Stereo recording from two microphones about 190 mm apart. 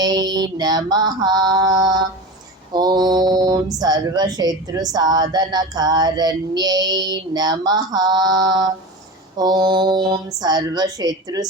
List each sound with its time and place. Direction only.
0.0 s a woman's voice: 20° right (ahead or behind)